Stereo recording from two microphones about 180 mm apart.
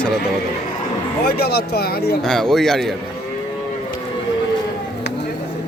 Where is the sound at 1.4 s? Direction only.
60° left (ahead or behind).